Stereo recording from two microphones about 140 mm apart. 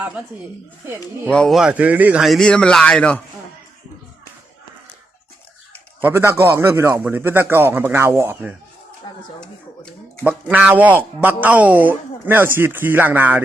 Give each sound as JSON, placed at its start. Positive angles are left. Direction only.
{"t": 1.3, "sound": "a man's voice", "side_deg": 5}
{"t": 2.2, "sound": "speech", "side_deg": 0}
{"t": 6.0, "sound": "a man's voice", "side_deg": -15}
{"t": 10.2, "sound": "a man's voice", "side_deg": -10}